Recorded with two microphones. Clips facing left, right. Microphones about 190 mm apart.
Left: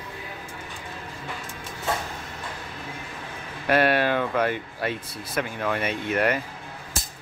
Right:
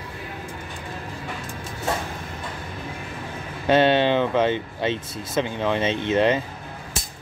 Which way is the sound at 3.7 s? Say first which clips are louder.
Right 4 dB; 25° right (ahead or behind).